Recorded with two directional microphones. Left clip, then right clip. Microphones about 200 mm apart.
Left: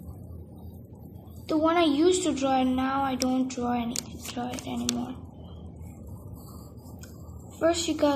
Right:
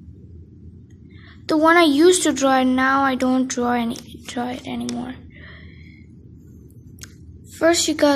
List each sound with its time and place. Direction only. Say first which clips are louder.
1.4 s speech: right 9 dB; 45° right (ahead or behind)
7.5 s speech: right 8 dB; 45° right (ahead or behind)